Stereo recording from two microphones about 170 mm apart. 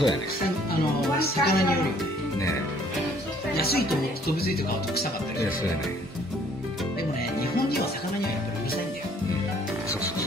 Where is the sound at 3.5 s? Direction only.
65° left (ahead or behind).